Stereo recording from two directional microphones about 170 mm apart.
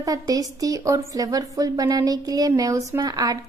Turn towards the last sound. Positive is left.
turn(degrees=-20)  # may be behind; listen again after turning